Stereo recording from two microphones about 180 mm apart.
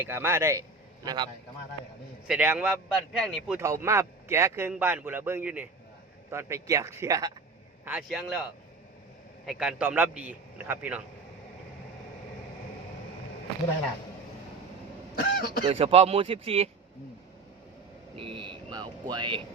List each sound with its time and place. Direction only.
0.0 s a man's voice: 15° right (ahead or behind)
2.2 s speech: 5° right (ahead or behind)
3.6 s a man's voice: 15° right (ahead or behind)
7.9 s speech: 5° right (ahead or behind)
9.5 s a man's voice: 5° right (ahead or behind)
15.2 s speech: 60° left (ahead or behind)
15.6 s speech: 35° right (ahead or behind)
18.2 s speech: 30° right (ahead or behind)